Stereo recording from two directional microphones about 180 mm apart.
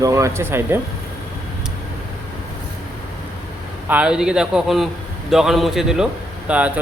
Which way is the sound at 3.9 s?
5° right (ahead or behind).